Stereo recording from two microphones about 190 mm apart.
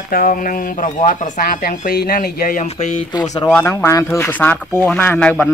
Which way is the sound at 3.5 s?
10° left (ahead or behind).